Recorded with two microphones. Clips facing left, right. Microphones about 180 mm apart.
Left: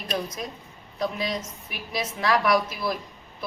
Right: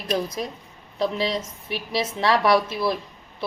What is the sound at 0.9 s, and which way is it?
A woman's voice, 30° right (ahead or behind).